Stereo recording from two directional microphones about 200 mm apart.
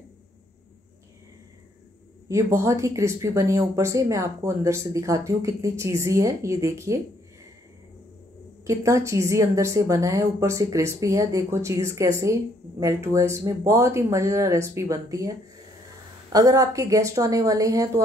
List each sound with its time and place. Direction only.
2.2 s a woman's voice: 15° right (ahead or behind)
8.6 s a woman's voice: 15° right (ahead or behind)